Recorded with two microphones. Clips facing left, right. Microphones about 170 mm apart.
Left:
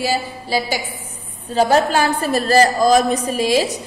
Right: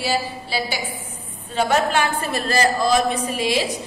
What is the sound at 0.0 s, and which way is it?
A woman's voice, 40° left (ahead or behind).